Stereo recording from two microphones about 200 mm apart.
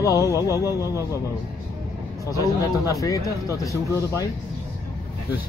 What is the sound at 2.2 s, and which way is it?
Speech, 15° left (ahead or behind).